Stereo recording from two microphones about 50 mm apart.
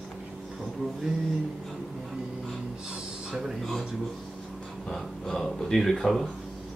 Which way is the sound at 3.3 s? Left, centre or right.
Centre.